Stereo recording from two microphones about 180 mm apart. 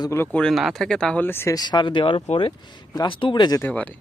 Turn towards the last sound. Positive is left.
turn(degrees=10)  # may be behind; listen again after turning